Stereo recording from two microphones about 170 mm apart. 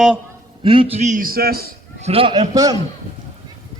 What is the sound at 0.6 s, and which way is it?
A man's voice, 30° right (ahead or behind).